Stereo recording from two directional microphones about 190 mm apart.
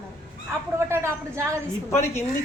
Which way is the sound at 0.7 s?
15° right (ahead or behind).